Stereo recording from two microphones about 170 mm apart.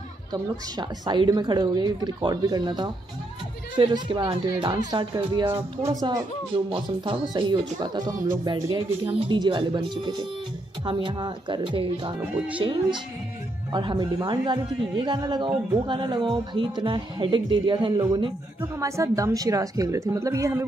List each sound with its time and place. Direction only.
0.3 s speech: 25° right (ahead or behind)
9.0 s speech: 35° right (ahead or behind)
12.2 s speech: 10° right (ahead or behind)
12.5 s speech: 30° right (ahead or behind)